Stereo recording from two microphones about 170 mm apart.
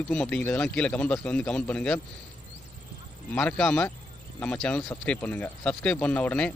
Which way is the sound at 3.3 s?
5° left (ahead or behind).